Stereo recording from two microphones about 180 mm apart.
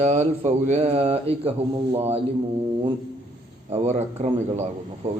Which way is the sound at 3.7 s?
40° right (ahead or behind).